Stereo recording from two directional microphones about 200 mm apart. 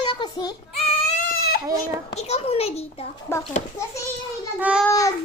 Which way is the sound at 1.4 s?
50° left (ahead or behind).